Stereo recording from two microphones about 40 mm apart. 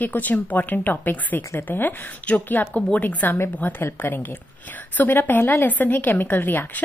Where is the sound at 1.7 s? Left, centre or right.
Left.